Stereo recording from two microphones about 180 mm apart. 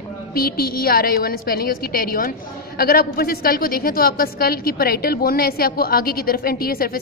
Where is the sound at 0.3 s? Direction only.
55° left (ahead or behind).